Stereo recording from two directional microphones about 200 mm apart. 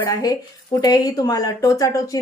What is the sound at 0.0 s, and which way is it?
Speech, 15° left (ahead or behind).